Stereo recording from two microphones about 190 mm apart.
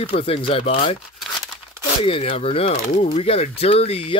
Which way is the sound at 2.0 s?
30° left (ahead or behind).